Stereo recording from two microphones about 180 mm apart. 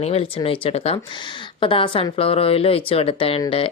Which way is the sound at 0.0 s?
30° left (ahead or behind).